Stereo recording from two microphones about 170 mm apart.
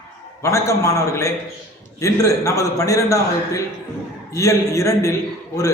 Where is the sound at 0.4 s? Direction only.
15° left (ahead or behind).